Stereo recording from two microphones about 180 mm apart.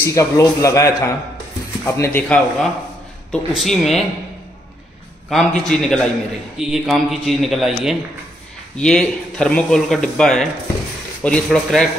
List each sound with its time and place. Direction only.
0.0 s a man's voice: 15° left (ahead or behind); by 4.0 s centre (ahead or behind)
5.3 s speech: centre (ahead or behind)